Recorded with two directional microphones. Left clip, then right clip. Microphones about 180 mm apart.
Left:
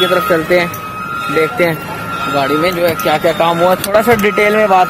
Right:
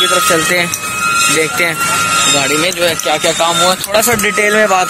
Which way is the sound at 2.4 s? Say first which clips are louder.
Even; 20° left (ahead or behind).